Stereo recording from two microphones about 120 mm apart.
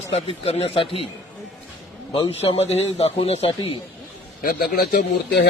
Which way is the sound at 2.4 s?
60° left (ahead or behind).